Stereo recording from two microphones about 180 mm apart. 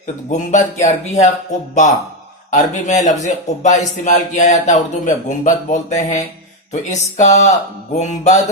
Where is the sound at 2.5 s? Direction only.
40° left (ahead or behind).